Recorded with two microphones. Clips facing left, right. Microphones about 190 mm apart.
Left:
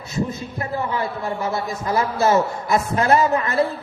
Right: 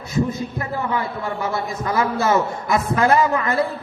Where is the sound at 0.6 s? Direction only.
30° left (ahead or behind).